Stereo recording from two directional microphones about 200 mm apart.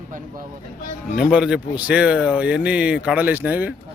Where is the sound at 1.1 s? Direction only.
5° right (ahead or behind).